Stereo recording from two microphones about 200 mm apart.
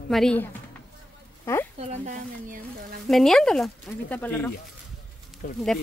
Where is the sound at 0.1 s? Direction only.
5° left (ahead or behind).